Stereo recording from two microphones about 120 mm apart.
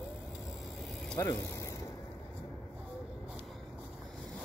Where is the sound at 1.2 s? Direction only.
25° left (ahead or behind).